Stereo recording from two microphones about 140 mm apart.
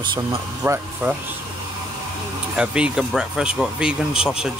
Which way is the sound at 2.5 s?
5° right (ahead or behind).